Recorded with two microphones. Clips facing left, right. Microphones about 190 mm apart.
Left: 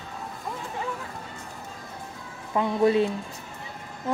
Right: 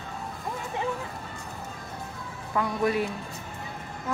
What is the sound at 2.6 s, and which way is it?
Speech, 25° left (ahead or behind).